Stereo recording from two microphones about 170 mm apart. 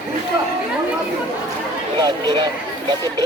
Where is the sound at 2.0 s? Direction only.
25° right (ahead or behind).